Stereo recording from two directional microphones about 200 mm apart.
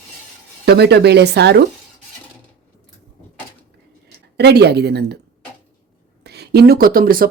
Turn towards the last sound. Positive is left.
turn(degrees=-45)  # may be behind; listen again after turning